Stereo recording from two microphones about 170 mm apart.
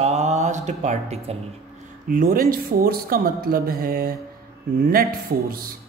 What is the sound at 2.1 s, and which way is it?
Speech, 55° right (ahead or behind).